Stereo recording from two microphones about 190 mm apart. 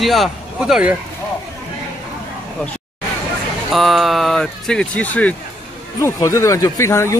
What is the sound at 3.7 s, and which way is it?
Speech, centre (ahead or behind).